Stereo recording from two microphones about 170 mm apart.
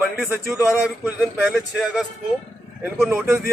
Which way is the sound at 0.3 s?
15° right (ahead or behind).